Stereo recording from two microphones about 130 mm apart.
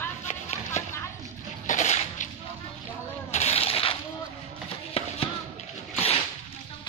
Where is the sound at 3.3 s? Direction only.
55° left (ahead or behind).